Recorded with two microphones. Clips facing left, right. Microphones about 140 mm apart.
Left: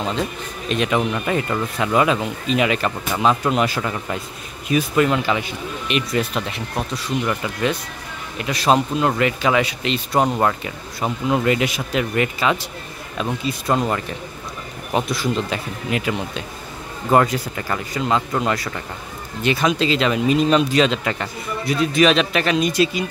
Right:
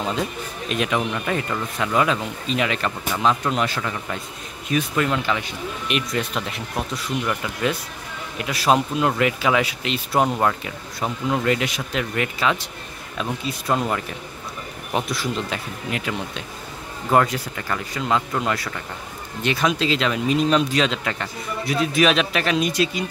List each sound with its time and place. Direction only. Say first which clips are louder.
0.7 s speech: left 3 dB; 5° right (ahead or behind)